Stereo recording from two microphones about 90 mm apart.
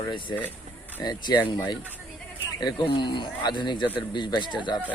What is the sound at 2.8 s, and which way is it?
A man's voice, 60° left (ahead or behind).